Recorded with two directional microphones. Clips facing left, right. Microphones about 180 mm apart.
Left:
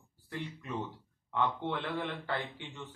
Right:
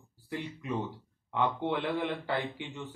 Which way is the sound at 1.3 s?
15° right (ahead or behind).